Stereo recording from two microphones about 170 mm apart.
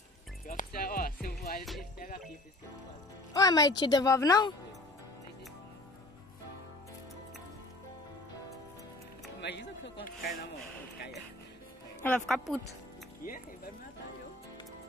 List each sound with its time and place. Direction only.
0.5 s music: 55° left (ahead or behind)
3.3 s a woman's voice: 20° left (ahead or behind)
9.4 s speech: 90° left
10.0 s speech: 60° left (ahead or behind)
12.0 s speech: 10° left (ahead or behind)